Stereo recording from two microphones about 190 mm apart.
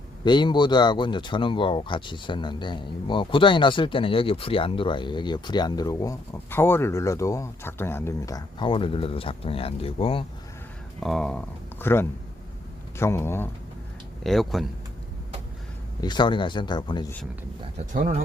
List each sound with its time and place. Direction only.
0.3 s speech: 25° left (ahead or behind)
11.0 s speech: centre (ahead or behind)
14.3 s speech: centre (ahead or behind)
16.0 s speech: 25° left (ahead or behind)
17.9 s speech: 45° right (ahead or behind)